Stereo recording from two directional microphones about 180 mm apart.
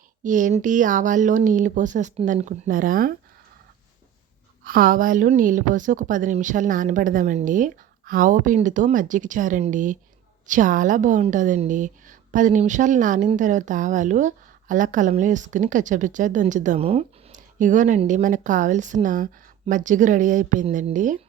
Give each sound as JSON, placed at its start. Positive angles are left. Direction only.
{"t": 0.2, "sound": "a woman's voice", "side_deg": -45}
{"t": 4.6, "sound": "a woman's voice", "side_deg": -50}